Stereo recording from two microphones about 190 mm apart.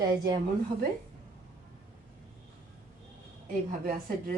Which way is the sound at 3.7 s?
45° right (ahead or behind).